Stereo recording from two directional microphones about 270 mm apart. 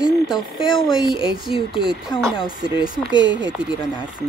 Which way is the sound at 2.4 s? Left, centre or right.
Centre.